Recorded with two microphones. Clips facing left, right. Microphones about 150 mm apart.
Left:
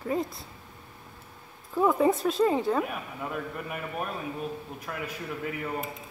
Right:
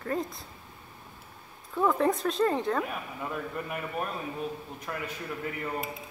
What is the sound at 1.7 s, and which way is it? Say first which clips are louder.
Speech: left 2 dB; 10° left (ahead or behind).